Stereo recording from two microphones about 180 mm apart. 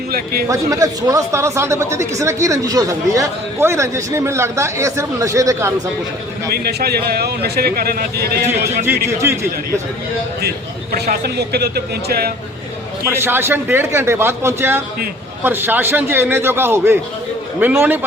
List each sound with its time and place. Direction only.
0.4 s speech: 15° right (ahead or behind)
6.5 s a man's voice: 60° right (ahead or behind)
8.8 s speech: 15° right (ahead or behind)
10.9 s a man's voice: 60° right (ahead or behind)
13.2 s speech: 10° right (ahead or behind)